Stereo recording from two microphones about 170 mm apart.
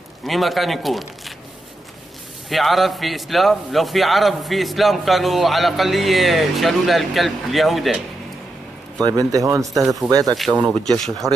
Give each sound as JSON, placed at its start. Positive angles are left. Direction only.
{"t": 0.2, "sound": "a man's voice", "side_deg": 0}
{"t": 2.5, "sound": "a man's voice", "side_deg": 0}
{"t": 9.0, "sound": "speech", "side_deg": -20}
{"t": 10.3, "sound": "a man's voice", "side_deg": -5}